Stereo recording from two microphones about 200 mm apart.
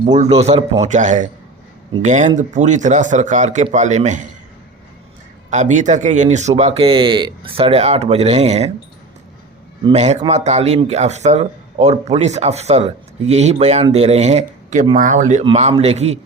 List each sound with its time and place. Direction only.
0.0 s speech: 35° right (ahead or behind)
5.5 s speech: 35° right (ahead or behind)
9.8 s speech: 35° right (ahead or behind)